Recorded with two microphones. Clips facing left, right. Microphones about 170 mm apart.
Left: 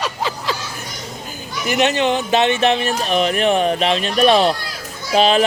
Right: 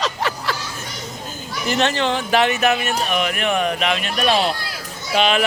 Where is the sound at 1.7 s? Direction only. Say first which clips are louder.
Left 3 dB; 15° left (ahead or behind).